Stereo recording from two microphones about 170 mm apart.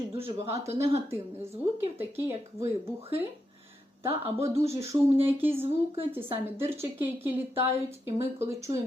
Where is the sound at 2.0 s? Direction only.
15° right (ahead or behind).